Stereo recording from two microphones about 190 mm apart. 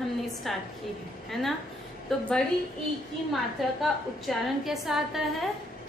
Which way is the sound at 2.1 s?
5° left (ahead or behind).